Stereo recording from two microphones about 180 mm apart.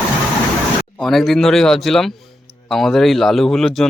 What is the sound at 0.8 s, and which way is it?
Speech, 5° left (ahead or behind).